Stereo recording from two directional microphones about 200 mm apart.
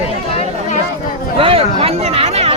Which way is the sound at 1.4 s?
25° right (ahead or behind).